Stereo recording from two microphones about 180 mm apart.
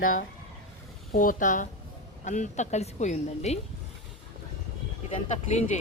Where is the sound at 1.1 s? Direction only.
50° left (ahead or behind).